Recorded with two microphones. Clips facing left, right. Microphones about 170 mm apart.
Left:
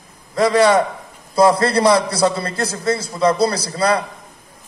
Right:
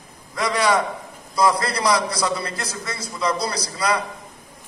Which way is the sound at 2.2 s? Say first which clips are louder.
Left 7 dB; 50° left (ahead or behind).